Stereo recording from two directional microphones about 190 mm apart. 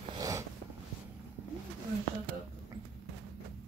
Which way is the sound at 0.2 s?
15° right (ahead or behind).